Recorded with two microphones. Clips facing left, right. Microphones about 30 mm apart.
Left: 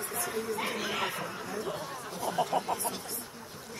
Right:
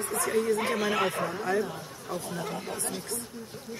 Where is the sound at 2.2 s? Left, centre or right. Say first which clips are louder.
Left 6 dB; left.